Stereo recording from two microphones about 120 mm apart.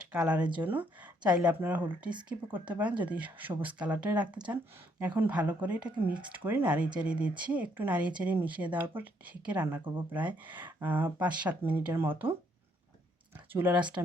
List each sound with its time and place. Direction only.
0.3 s speech: 10° right (ahead or behind)
13.3 s speech: 15° right (ahead or behind)